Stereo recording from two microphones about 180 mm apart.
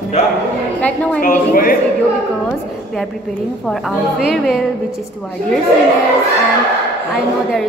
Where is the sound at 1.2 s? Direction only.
50° left (ahead or behind).